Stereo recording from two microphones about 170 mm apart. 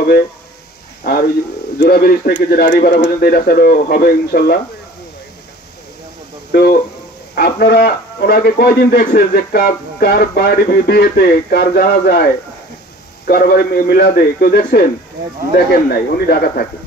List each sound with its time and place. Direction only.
1.8 s speech: 60° left (ahead or behind)
6.5 s a man's voice: 65° left (ahead or behind)